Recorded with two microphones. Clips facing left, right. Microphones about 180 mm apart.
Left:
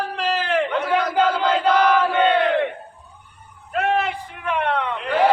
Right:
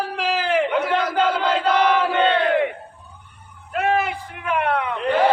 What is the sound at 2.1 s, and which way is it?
Crowd, 10° left (ahead or behind).